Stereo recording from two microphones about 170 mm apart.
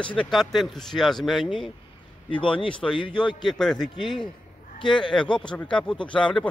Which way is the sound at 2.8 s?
Centre (ahead or behind).